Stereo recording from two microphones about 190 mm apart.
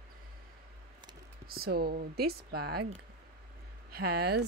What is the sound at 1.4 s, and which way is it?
Speech, 55° right (ahead or behind).